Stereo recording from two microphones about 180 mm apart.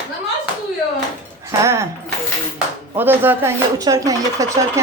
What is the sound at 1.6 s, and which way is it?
Speech, 15° right (ahead or behind).